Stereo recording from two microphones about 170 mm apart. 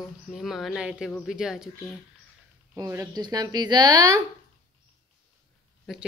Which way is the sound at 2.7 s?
15° right (ahead or behind).